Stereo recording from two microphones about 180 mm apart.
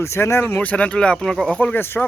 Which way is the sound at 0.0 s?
15° left (ahead or behind).